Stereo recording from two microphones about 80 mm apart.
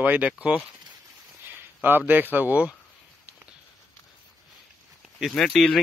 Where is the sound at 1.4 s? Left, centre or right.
Right.